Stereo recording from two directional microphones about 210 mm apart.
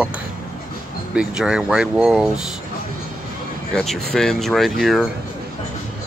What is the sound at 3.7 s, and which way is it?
Speech, centre (ahead or behind).